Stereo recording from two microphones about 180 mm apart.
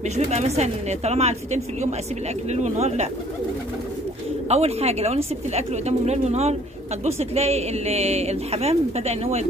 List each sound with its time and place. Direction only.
0.1 s a woman's voice: 40° right (ahead or behind)
4.5 s a woman's voice: 35° right (ahead or behind)